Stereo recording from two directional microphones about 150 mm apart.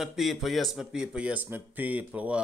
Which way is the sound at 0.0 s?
Centre (ahead or behind).